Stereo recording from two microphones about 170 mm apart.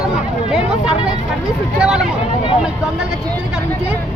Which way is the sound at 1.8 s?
5° right (ahead or behind).